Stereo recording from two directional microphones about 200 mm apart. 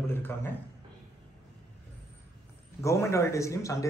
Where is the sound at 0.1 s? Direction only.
10° left (ahead or behind).